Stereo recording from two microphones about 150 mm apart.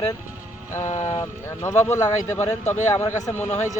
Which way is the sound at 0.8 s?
50° left (ahead or behind).